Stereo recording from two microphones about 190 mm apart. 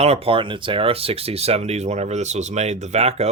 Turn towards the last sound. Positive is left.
turn(degrees=-35)  # may be behind; listen again after turning